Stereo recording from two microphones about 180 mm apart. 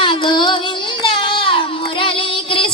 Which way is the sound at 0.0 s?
30° left (ahead or behind).